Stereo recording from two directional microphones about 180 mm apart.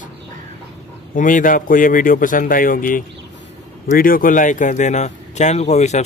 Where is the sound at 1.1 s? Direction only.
45° left (ahead or behind).